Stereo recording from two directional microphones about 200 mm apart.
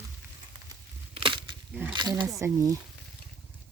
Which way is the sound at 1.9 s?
20° right (ahead or behind).